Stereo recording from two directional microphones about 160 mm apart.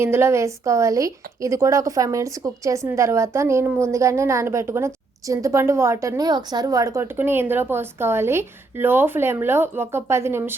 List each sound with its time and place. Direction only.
0.0 s a woman's voice: 15° right (ahead or behind)